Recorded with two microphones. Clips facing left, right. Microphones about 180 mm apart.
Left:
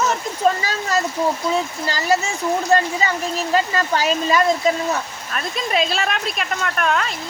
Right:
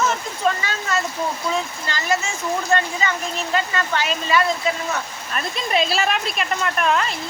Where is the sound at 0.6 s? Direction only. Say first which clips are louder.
Left 3 dB; 35° left (ahead or behind).